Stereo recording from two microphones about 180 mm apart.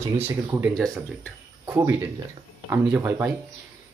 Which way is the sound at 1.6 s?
15° right (ahead or behind).